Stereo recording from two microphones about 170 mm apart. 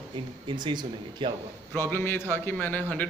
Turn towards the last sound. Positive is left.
turn(degrees=10)  # may be behind; listen again after turning